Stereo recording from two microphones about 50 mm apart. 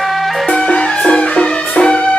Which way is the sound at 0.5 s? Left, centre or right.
Left.